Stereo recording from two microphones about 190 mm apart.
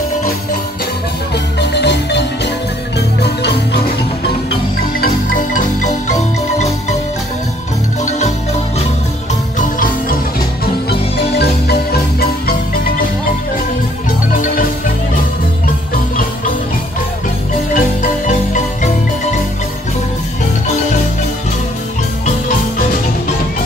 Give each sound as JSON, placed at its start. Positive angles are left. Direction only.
{"t": 1.3, "sound": "marimba", "side_deg": 60}
{"t": 3.2, "sound": "music", "side_deg": 60}
{"t": 5.0, "sound": "marimba", "side_deg": 45}
{"t": 9.6, "sound": "music", "side_deg": 45}
{"t": 10.6, "sound": "marimba", "side_deg": 55}
{"t": 14.3, "sound": "music", "side_deg": 45}
{"t": 17.7, "sound": "marimba", "side_deg": 45}